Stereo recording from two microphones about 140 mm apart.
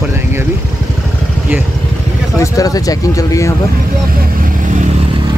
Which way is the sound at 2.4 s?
25° left (ahead or behind).